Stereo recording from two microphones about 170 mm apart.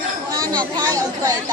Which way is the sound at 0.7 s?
20° right (ahead or behind).